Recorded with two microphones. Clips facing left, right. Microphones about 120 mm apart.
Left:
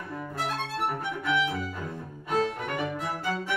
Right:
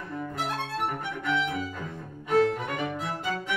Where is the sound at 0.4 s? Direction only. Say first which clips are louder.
Left 1 dB; 15° right (ahead or behind).